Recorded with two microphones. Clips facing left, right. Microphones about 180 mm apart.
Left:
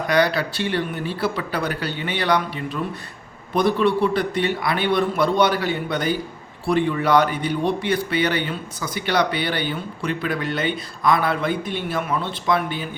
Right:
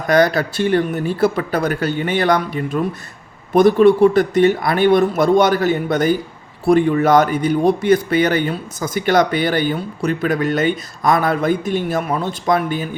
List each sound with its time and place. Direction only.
0.1 s speech: 45° right (ahead or behind)